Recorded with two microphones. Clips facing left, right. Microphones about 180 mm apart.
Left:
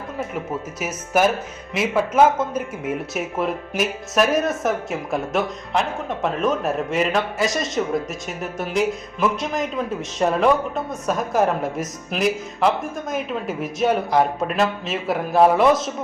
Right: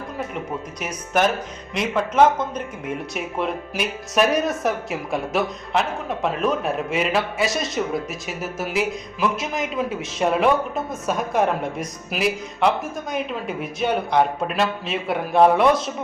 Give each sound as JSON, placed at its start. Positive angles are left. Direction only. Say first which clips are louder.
{"t": 0.8, "sound": "a man's voice", "louder": "left 2 dB", "side_deg": 5}